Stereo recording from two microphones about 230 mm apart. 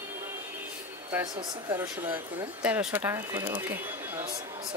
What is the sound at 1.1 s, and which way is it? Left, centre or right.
Speech, centre.